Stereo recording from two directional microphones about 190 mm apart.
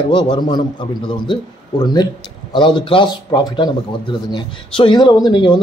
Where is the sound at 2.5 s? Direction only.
25° left (ahead or behind).